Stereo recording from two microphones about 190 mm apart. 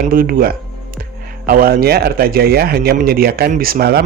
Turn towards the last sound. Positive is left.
turn(degrees=-50)  # may be behind; listen again after turning